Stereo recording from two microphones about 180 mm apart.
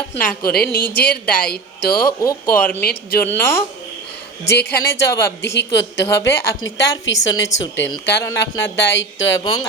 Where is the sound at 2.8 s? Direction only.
60° left (ahead or behind).